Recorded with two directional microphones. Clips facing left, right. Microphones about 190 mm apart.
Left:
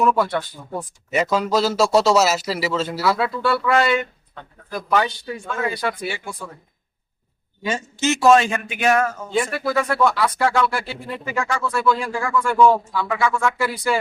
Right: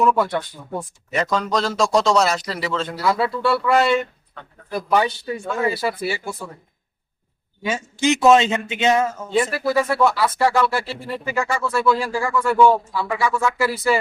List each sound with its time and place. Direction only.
0.0 s speech: 5° left (ahead or behind)
7.6 s a man's voice: 10° right (ahead or behind)
9.3 s speech: centre (ahead or behind)